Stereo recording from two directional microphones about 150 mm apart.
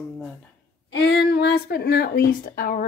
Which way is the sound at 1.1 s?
90° left.